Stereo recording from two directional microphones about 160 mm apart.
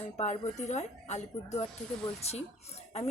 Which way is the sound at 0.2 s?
45° left (ahead or behind).